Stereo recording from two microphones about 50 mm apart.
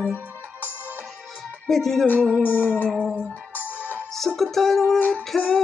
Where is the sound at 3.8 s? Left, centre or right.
Right.